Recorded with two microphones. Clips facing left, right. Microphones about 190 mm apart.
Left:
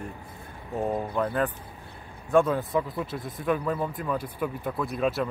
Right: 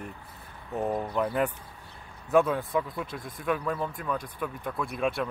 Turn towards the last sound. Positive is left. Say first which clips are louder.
# left 2 dB
turn(degrees=0)  # may be behind; listen again after turning